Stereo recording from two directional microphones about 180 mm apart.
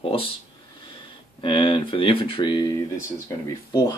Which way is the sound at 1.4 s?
30° left (ahead or behind).